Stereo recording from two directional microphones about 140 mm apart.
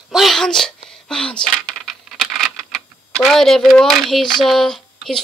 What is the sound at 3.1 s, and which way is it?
Speech, centre (ahead or behind).